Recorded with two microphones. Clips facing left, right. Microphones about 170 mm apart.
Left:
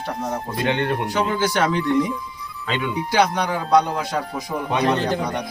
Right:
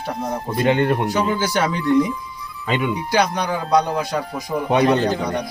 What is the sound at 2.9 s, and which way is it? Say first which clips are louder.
A man's voice: left 4 dB; centre (ahead or behind).